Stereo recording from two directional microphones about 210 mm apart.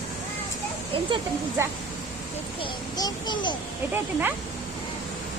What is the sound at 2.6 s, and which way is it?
Speech, 20° left (ahead or behind).